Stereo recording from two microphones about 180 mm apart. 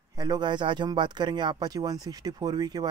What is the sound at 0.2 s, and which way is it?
Speech, 25° right (ahead or behind).